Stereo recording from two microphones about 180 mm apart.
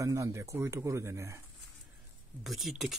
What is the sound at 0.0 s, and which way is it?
Speech, 15° right (ahead or behind).